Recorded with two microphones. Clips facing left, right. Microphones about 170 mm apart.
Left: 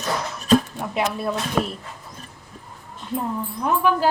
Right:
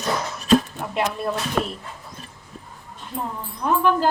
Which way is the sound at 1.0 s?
5° left (ahead or behind).